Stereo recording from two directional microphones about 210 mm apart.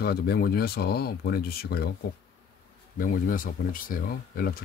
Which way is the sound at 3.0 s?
40° left (ahead or behind).